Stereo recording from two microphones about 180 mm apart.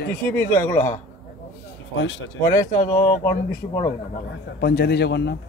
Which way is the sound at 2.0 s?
90° left.